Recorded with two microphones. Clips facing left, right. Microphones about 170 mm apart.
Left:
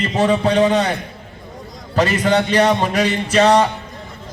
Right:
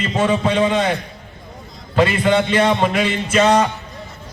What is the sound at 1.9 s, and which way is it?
A man's voice, 40° left (ahead or behind).